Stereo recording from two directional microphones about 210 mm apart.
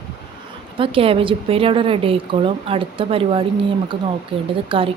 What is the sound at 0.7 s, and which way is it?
Speech, 25° right (ahead or behind).